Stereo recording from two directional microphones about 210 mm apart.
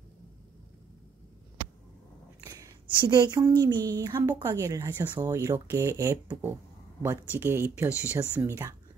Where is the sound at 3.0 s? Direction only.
20° right (ahead or behind).